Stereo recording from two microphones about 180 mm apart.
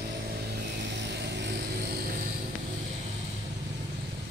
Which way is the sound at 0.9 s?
75° right (ahead or behind).